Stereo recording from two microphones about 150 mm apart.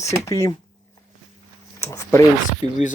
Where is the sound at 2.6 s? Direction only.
25° right (ahead or behind).